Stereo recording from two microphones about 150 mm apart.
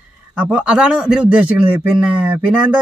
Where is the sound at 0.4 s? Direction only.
5° right (ahead or behind).